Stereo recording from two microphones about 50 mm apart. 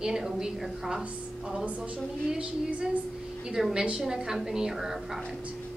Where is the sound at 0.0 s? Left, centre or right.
Centre.